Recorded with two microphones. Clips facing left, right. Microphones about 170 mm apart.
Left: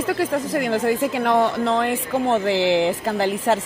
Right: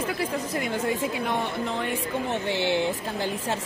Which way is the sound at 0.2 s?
90° left.